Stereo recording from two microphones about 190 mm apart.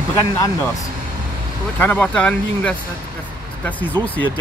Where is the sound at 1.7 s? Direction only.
10° left (ahead or behind).